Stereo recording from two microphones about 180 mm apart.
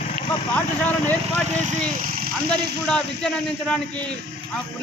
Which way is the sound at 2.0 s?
50° right (ahead or behind).